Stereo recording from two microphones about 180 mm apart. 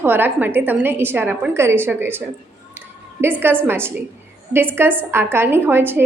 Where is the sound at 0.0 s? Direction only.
10° right (ahead or behind).